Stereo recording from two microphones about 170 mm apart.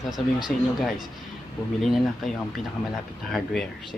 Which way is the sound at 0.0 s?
Centre (ahead or behind).